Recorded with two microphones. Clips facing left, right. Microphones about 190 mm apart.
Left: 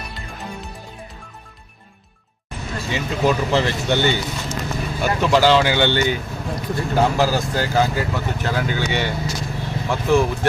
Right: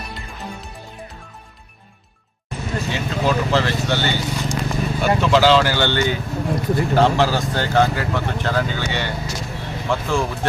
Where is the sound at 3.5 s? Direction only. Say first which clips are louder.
Even; 15° left (ahead or behind).